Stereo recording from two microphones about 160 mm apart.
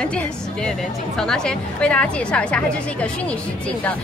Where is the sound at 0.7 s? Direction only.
5° left (ahead or behind).